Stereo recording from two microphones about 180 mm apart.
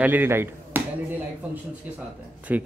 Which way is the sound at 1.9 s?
10° right (ahead or behind).